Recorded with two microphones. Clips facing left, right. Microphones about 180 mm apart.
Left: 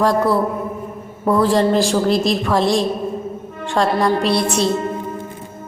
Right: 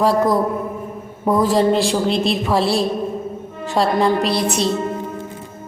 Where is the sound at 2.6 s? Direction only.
35° right (ahead or behind).